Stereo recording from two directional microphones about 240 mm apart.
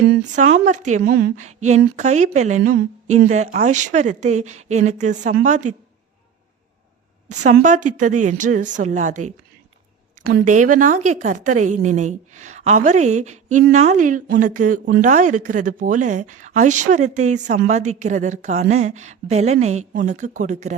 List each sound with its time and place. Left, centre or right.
0.3 s a woman's voice: right
7.3 s a woman's voice: right